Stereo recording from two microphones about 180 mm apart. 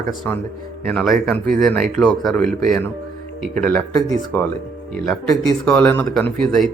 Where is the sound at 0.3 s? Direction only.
10° left (ahead or behind).